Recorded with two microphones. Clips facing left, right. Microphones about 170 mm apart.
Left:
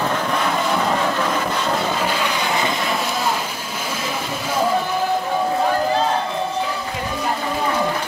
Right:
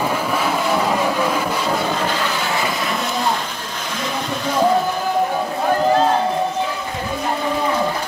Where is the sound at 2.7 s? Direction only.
Centre (ahead or behind).